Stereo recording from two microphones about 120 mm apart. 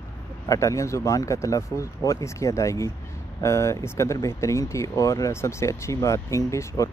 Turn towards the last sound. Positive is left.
turn(degrees=25)  # may be behind; listen again after turning